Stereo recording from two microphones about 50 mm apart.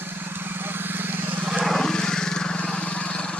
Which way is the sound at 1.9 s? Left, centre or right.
Centre.